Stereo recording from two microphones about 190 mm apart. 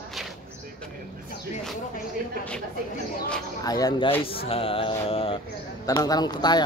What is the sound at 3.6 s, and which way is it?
A man's voice, 20° left (ahead or behind).